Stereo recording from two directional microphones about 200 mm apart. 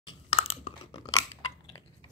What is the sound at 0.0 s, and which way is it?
Chewing, 25° left (ahead or behind).